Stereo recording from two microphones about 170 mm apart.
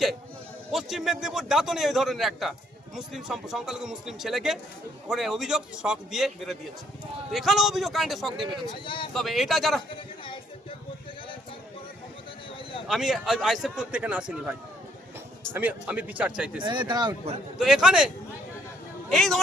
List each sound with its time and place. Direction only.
0.7 s a man's voice: centre (ahead or behind)
8.7 s speech: 30° left (ahead or behind)
9.1 s a man's voice: centre (ahead or behind)
12.9 s a man's voice: centre (ahead or behind)
15.5 s speech: 10° right (ahead or behind)
16.6 s speech: 25° right (ahead or behind)
17.6 s a man's voice: 5° right (ahead or behind)
19.1 s a man's voice: centre (ahead or behind)